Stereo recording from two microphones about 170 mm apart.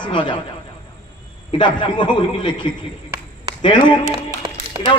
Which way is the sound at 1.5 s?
30° left (ahead or behind).